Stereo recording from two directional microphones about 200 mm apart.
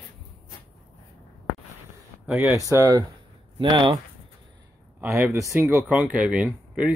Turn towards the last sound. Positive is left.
turn(degrees=-5)  # may be behind; listen again after turning